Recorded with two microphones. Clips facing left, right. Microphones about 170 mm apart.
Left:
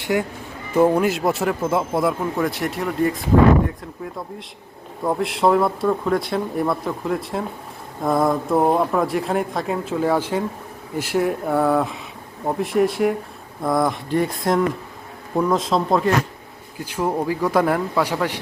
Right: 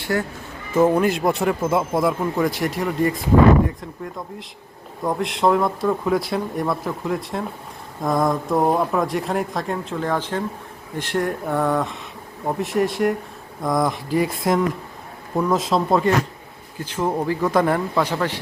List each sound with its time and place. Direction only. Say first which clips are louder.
0.0 s speech: left 2 dB; 15° left (ahead or behind); by 16.1 s centre (ahead or behind)
16.8 s speech: even; 10° left (ahead or behind)